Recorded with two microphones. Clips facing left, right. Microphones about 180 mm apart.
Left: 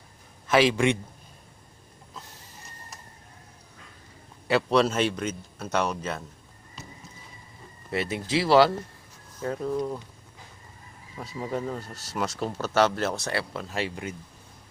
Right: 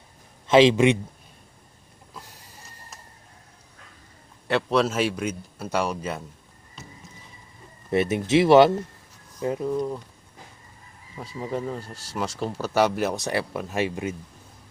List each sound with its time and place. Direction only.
0.4 s speech: 20° right (ahead or behind)
4.4 s speech: centre (ahead or behind)
7.9 s speech: 25° right (ahead or behind)
9.6 s speech: centre (ahead or behind)
11.3 s speech: centre (ahead or behind)
11.8 s speech: 10° right (ahead or behind)